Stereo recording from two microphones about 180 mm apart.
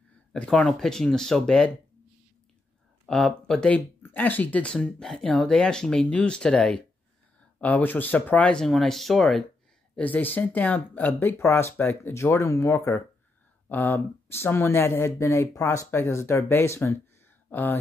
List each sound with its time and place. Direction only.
0.3 s speech: 5° left (ahead or behind)
3.1 s speech: centre (ahead or behind)